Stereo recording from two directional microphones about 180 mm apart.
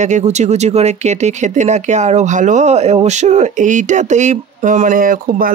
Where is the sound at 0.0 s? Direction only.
40° right (ahead or behind).